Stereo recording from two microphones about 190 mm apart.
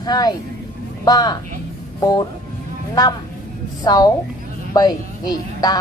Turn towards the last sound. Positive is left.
turn(degrees=20)  # may be behind; listen again after turning